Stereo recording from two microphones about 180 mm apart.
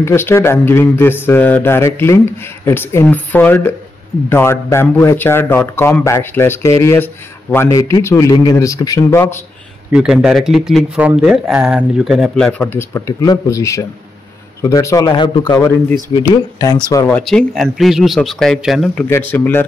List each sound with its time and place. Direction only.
0.0 s speech: 15° left (ahead or behind)
9.9 s speech: centre (ahead or behind); by 17.1 s 20° left (ahead or behind)
17.1 s speech: 5° left (ahead or behind)
19.0 s speech: 10° left (ahead or behind)